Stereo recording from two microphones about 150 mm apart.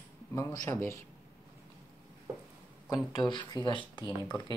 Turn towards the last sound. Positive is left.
turn(degrees=30)  # may be behind; listen again after turning